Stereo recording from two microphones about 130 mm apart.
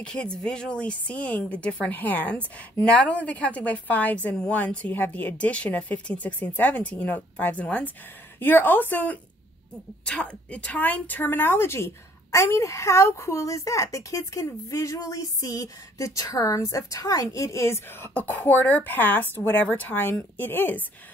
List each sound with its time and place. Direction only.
0.0 s a woman's voice: 5° left (ahead or behind)